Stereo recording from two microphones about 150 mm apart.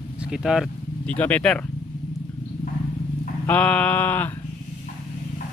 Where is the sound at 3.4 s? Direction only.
10° left (ahead or behind).